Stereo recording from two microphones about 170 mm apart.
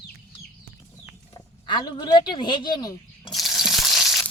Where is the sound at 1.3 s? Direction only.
25° left (ahead or behind).